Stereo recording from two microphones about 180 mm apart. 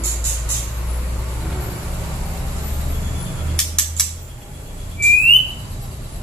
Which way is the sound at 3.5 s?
5° left (ahead or behind).